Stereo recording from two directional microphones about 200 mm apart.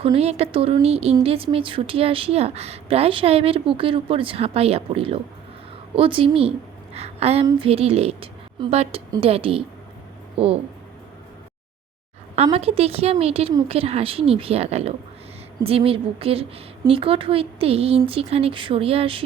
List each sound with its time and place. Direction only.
0.0 s a woman's voice: 30° right (ahead or behind)
12.4 s a woman's voice: 30° right (ahead or behind)